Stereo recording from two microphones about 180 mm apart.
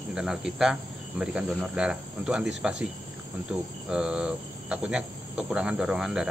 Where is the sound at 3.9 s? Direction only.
5° right (ahead or behind).